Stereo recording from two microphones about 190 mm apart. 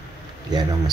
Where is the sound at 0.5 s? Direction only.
20° right (ahead or behind).